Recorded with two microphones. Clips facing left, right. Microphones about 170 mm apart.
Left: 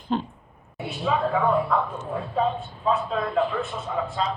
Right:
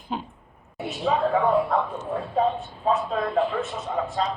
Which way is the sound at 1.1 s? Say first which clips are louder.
Right 1 dB; 40° right (ahead or behind).